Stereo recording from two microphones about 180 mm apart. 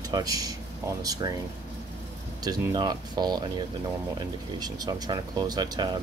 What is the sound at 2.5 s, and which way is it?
Speech, 25° right (ahead or behind).